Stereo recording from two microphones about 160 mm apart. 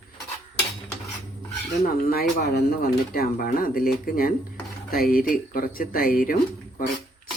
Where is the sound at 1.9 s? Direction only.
65° left (ahead or behind).